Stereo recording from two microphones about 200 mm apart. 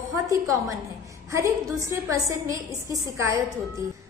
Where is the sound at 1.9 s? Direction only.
15° right (ahead or behind).